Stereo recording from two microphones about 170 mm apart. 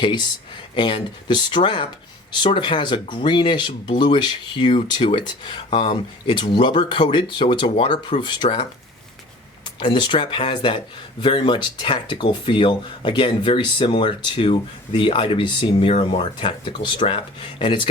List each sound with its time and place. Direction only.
0.0 s speech: 25° left (ahead or behind)
9.8 s speech: 30° left (ahead or behind)